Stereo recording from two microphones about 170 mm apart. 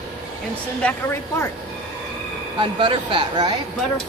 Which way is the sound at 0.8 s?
15° left (ahead or behind).